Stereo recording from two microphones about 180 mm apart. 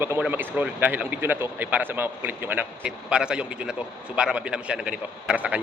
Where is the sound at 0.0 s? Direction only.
10° right (ahead or behind).